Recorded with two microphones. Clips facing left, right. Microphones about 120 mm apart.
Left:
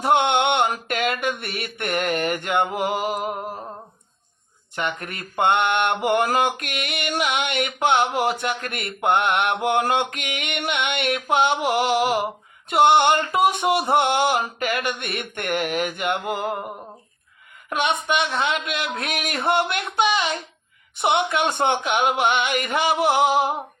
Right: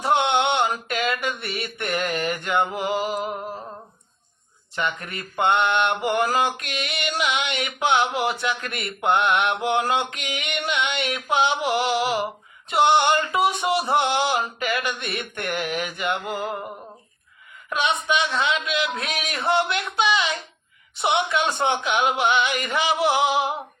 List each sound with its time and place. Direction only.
0.0 s a sound: 55° left (ahead or behind)
0.9 s mantra: 55° left (ahead or behind)
4.7 s mantra: 55° left (ahead or behind)
13.9 s speech: 55° left (ahead or behind)
17.7 s speech: 55° left (ahead or behind)